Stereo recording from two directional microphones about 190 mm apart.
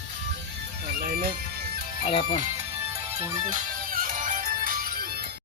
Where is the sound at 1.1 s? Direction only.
50° right (ahead or behind).